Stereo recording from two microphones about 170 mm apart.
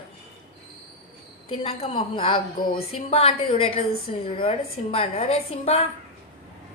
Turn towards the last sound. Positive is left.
turn(degrees=35)  # may be behind; listen again after turning